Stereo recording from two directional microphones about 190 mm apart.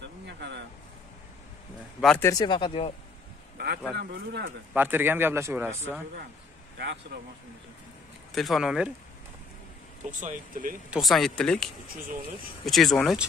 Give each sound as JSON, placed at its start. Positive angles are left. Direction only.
{"t": 0.3, "sound": "vehicle", "side_deg": -65}
{"t": 2.0, "sound": "speech", "side_deg": 0}
{"t": 2.2, "sound": "speech", "side_deg": 20}
{"t": 3.5, "sound": "a sound", "side_deg": -55}
{"t": 3.9, "sound": "speech", "side_deg": -60}
{"t": 4.7, "sound": "a man's voice", "side_deg": -10}
{"t": 8.3, "sound": "speech", "side_deg": 0}
{"t": 10.2, "sound": "speech", "side_deg": -45}
{"t": 10.9, "sound": "speech", "side_deg": 0}